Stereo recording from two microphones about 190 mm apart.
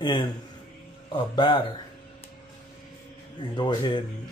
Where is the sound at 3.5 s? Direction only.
25° left (ahead or behind).